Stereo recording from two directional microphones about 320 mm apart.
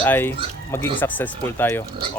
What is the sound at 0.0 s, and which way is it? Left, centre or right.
Speech, centre.